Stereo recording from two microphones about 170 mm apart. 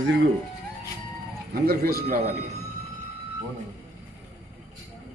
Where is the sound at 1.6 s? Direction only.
65° right (ahead or behind).